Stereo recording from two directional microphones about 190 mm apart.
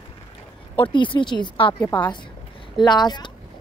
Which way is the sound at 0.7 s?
25° left (ahead or behind).